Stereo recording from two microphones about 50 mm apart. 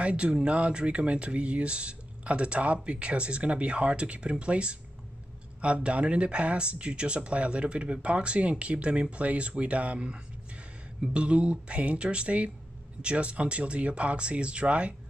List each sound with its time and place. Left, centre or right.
0.0 s speech: right